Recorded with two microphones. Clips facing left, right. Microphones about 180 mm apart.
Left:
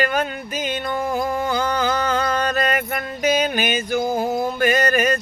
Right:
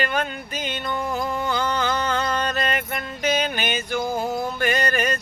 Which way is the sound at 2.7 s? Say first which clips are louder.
Left 4 dB; 45° left (ahead or behind).